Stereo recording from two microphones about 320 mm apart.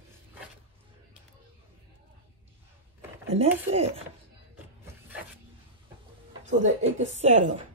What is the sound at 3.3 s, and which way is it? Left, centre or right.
Speech, centre.